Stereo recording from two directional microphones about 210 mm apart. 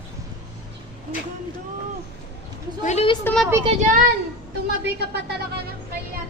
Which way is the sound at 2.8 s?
35° left (ahead or behind).